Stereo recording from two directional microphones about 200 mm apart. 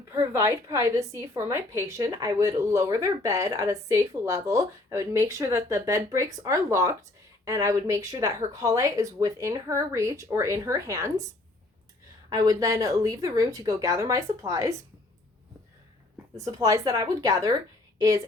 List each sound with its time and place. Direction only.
0.1 s a woman's voice: 15° right (ahead or behind)
12.3 s a woman's voice: 15° right (ahead or behind)
16.3 s a woman's voice: 15° right (ahead or behind)
17.9 s a sound: 15° right (ahead or behind)